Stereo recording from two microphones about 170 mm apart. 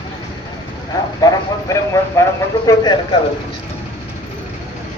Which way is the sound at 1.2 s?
20° left (ahead or behind).